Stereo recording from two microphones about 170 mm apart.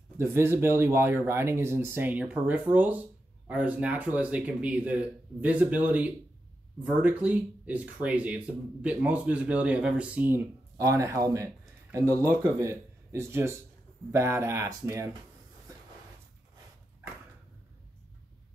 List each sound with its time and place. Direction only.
0.2 s speech: 15° right (ahead or behind)